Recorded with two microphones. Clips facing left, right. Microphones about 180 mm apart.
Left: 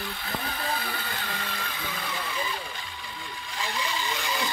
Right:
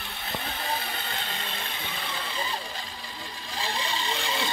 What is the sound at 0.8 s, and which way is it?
Speech, 25° right (ahead or behind).